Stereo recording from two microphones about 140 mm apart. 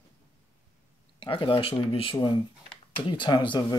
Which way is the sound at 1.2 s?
40° left (ahead or behind).